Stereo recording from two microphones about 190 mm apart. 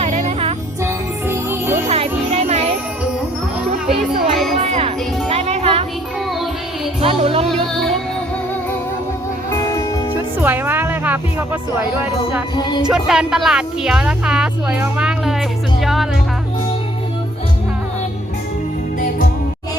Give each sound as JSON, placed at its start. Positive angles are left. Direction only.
{"t": 0.0, "sound": "music", "side_deg": -35}
{"t": 1.3, "sound": "music", "side_deg": -10}
{"t": 1.9, "sound": "music", "side_deg": -35}
{"t": 4.6, "sound": "music", "side_deg": -35}
{"t": 7.0, "sound": "music", "side_deg": -30}
{"t": 10.4, "sound": "music", "side_deg": -10}
{"t": 12.9, "sound": "speech", "side_deg": -5}